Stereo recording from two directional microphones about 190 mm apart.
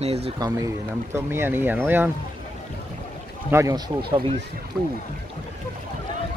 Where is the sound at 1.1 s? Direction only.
15° right (ahead or behind).